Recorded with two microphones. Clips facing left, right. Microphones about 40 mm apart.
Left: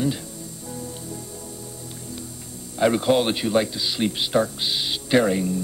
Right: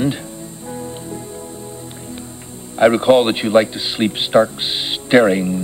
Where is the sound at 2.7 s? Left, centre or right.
Right.